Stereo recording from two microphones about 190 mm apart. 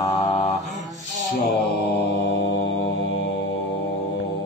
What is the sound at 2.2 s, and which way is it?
Mantra, 80° left.